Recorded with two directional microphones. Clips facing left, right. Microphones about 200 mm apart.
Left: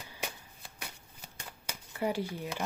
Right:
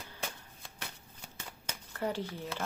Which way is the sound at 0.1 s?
10° left (ahead or behind).